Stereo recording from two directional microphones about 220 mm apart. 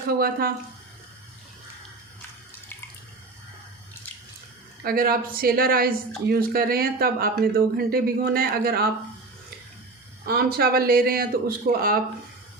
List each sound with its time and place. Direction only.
0.1 s speech: 45° right (ahead or behind)
4.8 s a man's voice: 40° right (ahead or behind)
10.2 s a man's voice: 45° right (ahead or behind)